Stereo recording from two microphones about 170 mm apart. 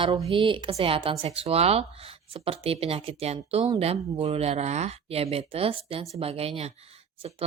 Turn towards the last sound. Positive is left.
turn(degrees=-35)  # may be behind; listen again after turning